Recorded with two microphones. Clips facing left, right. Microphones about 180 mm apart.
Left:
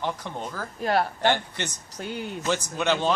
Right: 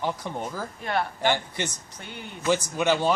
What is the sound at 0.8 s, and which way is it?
Speech, 40° left (ahead or behind).